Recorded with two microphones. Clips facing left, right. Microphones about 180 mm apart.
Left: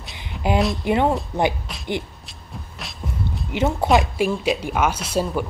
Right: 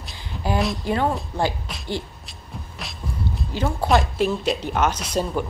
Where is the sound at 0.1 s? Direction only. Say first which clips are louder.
Left 3 dB; 20° left (ahead or behind).